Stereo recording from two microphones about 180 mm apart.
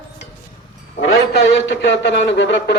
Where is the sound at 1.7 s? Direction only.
75° left (ahead or behind).